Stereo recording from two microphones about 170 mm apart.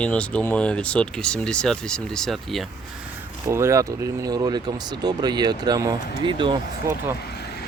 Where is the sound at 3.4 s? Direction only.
15° right (ahead or behind).